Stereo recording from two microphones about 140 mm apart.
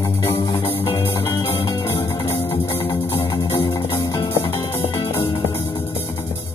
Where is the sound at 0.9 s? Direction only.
20° left (ahead or behind).